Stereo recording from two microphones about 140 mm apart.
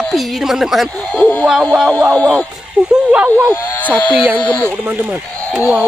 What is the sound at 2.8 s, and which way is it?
Speech, 10° right (ahead or behind).